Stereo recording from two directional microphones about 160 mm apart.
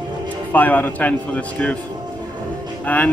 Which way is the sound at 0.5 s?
10° left (ahead or behind).